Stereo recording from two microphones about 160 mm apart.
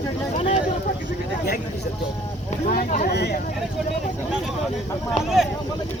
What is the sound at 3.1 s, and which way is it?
Speech, 90° left.